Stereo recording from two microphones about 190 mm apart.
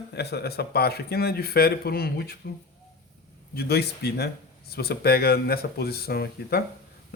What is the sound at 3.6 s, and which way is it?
A man's voice, 55° left (ahead or behind).